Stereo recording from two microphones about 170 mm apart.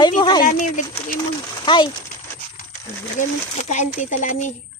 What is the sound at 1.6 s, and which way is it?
Speech, 25° left (ahead or behind).